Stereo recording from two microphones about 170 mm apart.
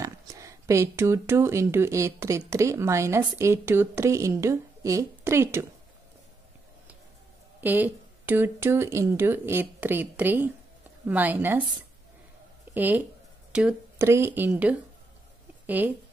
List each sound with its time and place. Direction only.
0.0 s speech: 20° right (ahead or behind)
7.6 s speech: 10° right (ahead or behind)
12.7 s speech: 10° right (ahead or behind)